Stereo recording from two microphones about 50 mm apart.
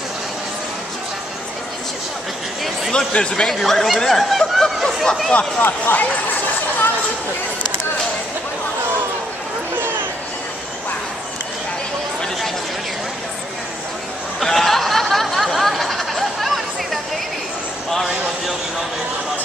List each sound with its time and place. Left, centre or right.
2.9 s a man's voice: centre
3.5 s speech: centre
5.6 s speech: left
9.8 s a sound: right
14.4 s snicker: centre